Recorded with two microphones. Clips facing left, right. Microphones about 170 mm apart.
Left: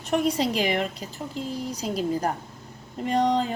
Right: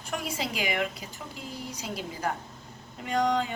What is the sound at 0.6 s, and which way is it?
Speech, 35° left (ahead or behind).